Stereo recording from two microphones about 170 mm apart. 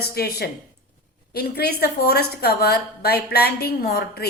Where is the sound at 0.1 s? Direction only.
70° left (ahead or behind).